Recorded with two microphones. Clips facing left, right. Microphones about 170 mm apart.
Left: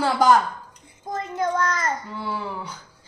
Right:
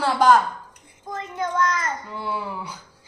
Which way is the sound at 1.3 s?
35° left (ahead or behind).